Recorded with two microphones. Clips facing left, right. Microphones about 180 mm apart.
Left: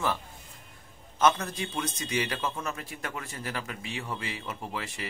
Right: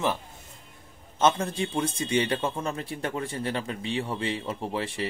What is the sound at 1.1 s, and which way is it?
A man's voice, 25° right (ahead or behind).